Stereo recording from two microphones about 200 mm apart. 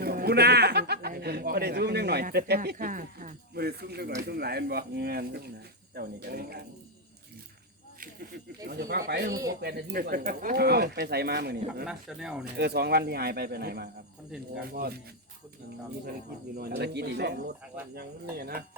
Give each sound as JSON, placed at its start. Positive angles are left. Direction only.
{"t": 0.0, "sound": "speech", "side_deg": -50}
{"t": 8.6, "sound": "speech", "side_deg": -50}
{"t": 9.3, "sound": "speech", "side_deg": -15}
{"t": 9.6, "sound": "speech", "side_deg": -55}
{"t": 11.9, "sound": "speech", "side_deg": -5}
{"t": 12.5, "sound": "speech", "side_deg": -55}
{"t": 16.6, "sound": "speech", "side_deg": -55}